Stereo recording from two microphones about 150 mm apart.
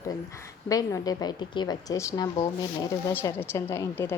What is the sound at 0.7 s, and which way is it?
A woman's voice, 25° left (ahead or behind).